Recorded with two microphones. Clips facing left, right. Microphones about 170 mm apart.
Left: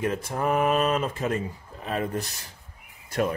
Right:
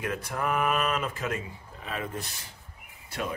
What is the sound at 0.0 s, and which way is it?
Speech, 30° left (ahead or behind).